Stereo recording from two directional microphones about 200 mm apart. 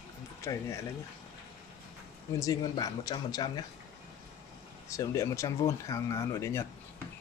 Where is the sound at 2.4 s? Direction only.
20° left (ahead or behind).